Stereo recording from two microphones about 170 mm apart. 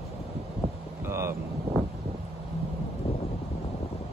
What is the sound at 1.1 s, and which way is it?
Vehicle, 15° right (ahead or behind).